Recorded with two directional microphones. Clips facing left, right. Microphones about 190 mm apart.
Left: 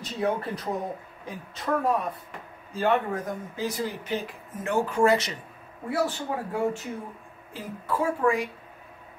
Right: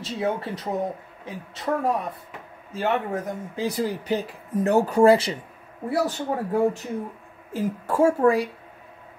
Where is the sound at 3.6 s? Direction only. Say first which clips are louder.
Right 5 dB; 35° right (ahead or behind).